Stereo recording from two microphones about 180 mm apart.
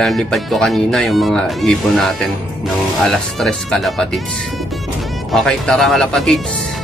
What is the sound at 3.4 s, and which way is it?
Speech, centre (ahead or behind).